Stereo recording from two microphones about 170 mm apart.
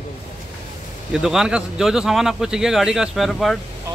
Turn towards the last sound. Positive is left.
turn(degrees=0)  # may be behind; listen again after turning